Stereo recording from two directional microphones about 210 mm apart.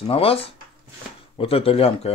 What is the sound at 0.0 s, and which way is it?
Speech, 25° left (ahead or behind).